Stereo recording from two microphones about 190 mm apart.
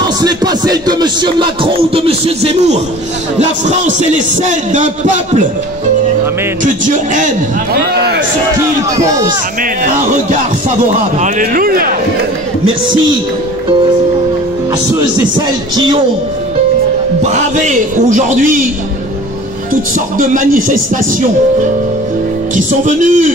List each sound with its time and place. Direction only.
0.2 s music: 20° right (ahead or behind); by 5.5 s 40° right (ahead or behind)
6.6 s music: 40° right (ahead or behind)
7.9 s a man's voice: 60° right (ahead or behind)
8.9 s speech: 15° right (ahead or behind)
11.0 s speech: 40° right (ahead or behind)
17.2 s music: 40° right (ahead or behind)
20.2 s speech: 45° right (ahead or behind)
22.6 s music: 40° right (ahead or behind)